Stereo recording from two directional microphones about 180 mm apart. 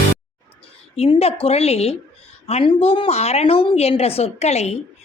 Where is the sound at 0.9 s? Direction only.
35° left (ahead or behind).